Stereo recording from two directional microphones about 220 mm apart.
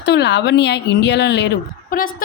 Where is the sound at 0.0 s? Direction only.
50° left (ahead or behind).